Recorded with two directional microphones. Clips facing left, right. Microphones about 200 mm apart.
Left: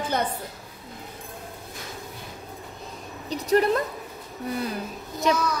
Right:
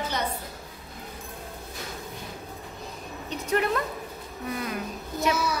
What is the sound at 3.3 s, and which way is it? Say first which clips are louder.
Speech: left 5 dB; 35° left (ahead or behind).